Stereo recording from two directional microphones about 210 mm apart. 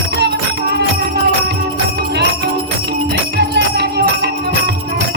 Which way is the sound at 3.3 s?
50° right (ahead or behind).